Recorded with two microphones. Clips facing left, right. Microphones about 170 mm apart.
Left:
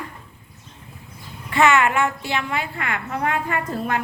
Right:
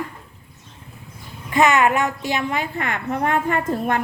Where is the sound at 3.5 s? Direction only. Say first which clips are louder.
Right 3 dB; 45° right (ahead or behind).